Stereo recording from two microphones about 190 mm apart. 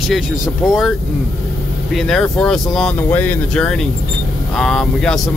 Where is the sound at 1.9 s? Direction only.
Centre (ahead or behind).